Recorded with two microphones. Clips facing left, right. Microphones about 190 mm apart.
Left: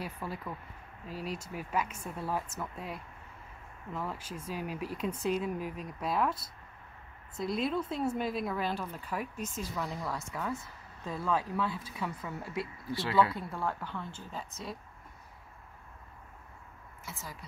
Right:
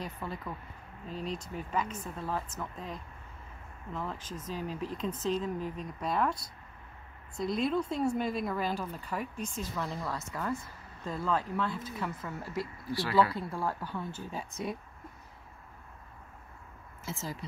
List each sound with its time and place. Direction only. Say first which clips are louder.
0.0 s speech: even; 10° left (ahead or behind)
12.9 s speech: right 1 dB; 25° left (ahead or behind)
13.5 s speech: right 1 dB; 10° right (ahead or behind)
17.0 s speech: right 7 dB; 25° right (ahead or behind)